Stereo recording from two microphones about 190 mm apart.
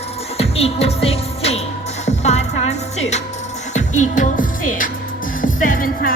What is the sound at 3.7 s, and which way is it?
Music, 40° left (ahead or behind).